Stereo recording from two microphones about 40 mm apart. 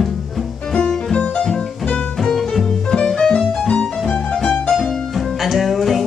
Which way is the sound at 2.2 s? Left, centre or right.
Centre.